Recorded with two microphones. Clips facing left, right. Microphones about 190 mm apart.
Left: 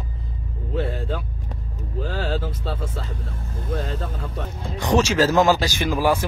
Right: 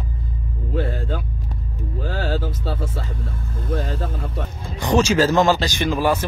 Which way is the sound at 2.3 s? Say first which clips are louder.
Right 2 dB; 5° right (ahead or behind).